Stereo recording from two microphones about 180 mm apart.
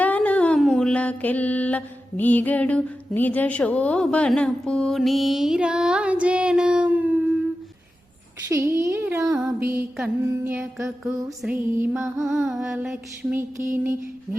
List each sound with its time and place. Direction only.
0.0 s mantra: 10° left (ahead or behind)
8.4 s speech: 15° right (ahead or behind)
9.2 s speech: 5° right (ahead or behind)
10.0 s music: 5° right (ahead or behind)
11.4 s speech: 10° right (ahead or behind)
12.2 s music: centre (ahead or behind)